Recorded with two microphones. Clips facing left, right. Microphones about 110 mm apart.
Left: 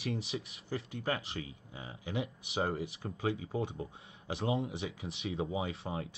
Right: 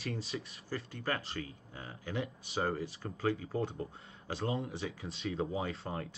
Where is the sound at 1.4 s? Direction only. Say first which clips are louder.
Right 1 dB; 30° left (ahead or behind).